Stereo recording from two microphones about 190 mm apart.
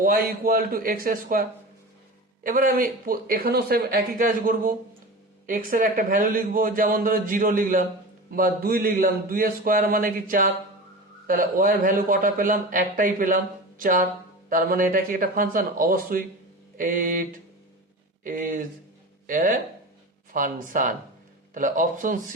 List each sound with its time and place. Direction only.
0.0 s a man's voice: 50° right (ahead or behind)